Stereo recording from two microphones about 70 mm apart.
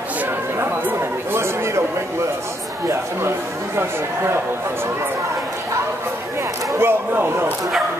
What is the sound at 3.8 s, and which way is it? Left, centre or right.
Speech, right.